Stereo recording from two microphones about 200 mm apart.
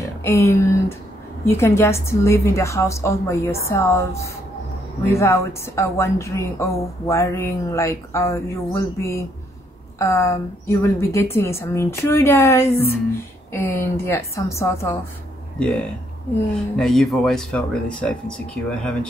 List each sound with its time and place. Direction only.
0.0 s a woman's voice: 15° left (ahead or behind)
16.7 s speech: centre (ahead or behind)